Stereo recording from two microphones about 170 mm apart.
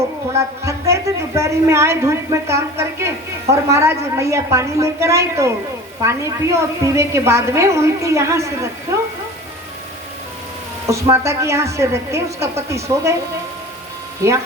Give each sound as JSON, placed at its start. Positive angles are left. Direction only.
{"t": 0.3, "sound": "speech", "side_deg": -15}
{"t": 11.1, "sound": "speech", "side_deg": -15}
{"t": 14.2, "sound": "speech", "side_deg": -15}